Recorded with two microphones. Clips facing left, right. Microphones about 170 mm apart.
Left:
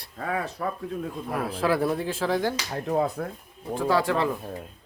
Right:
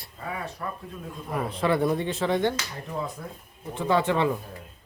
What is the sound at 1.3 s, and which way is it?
Speech, 5° left (ahead or behind).